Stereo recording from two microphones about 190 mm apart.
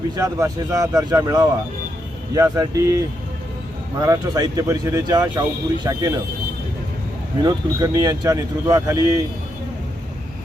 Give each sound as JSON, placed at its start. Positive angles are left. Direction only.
{"t": 0.2, "sound": "a man's voice", "side_deg": -15}
{"t": 7.4, "sound": "speech", "side_deg": -20}